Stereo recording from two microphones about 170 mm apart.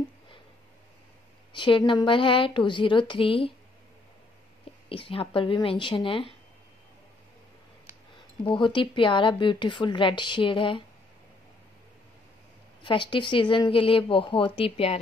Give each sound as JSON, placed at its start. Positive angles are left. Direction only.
{"t": 1.5, "sound": "a woman's voice", "side_deg": 30}
{"t": 4.8, "sound": "speech", "side_deg": 30}
{"t": 8.5, "sound": "a woman's voice", "side_deg": 30}
{"t": 12.8, "sound": "a woman's voice", "side_deg": 30}